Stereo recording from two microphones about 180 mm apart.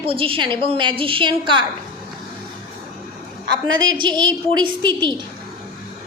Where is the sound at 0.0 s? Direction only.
30° right (ahead or behind).